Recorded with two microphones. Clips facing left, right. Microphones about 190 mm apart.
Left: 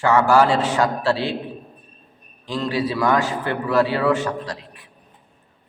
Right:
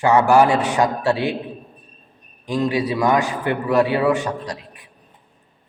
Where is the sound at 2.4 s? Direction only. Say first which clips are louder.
Right 3 dB; 15° right (ahead or behind).